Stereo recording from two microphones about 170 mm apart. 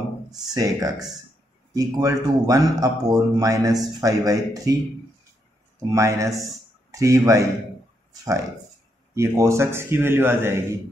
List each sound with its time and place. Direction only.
0.6 s speech: 20° right (ahead or behind)
5.9 s a man's voice: 20° right (ahead or behind)
8.1 s a sound: 20° right (ahead or behind)
9.1 s a man's voice: 15° right (ahead or behind)